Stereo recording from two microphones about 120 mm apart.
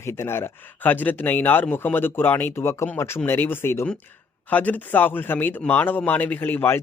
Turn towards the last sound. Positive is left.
turn(degrees=15)  # may be behind; listen again after turning